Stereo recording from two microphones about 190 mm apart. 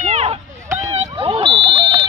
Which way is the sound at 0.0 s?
35° right (ahead or behind).